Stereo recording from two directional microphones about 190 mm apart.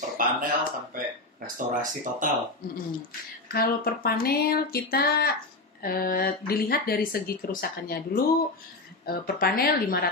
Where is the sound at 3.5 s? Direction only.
55° left (ahead or behind).